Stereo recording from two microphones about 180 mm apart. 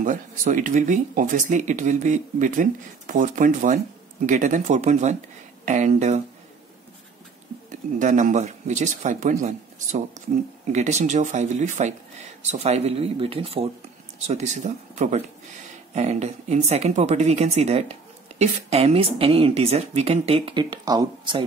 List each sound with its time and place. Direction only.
0.0 s a woman's voice: 45° right (ahead or behind)
7.7 s speech: 45° right (ahead or behind)
10.7 s a woman's voice: 40° right (ahead or behind); by 21.5 s 25° right (ahead or behind)